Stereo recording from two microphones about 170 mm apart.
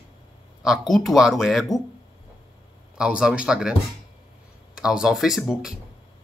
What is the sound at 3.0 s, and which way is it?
Speech, 5° right (ahead or behind).